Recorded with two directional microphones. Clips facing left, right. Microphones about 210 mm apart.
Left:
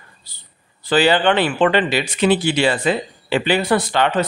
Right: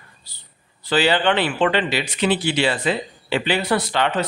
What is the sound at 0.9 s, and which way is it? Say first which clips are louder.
Speech: left 3 dB; 50° left (ahead or behind).